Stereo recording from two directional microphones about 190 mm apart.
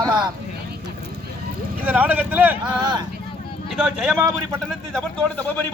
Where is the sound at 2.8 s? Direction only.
20° right (ahead or behind).